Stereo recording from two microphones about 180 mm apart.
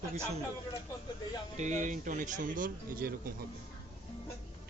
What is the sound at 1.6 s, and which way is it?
Speech, 40° right (ahead or behind).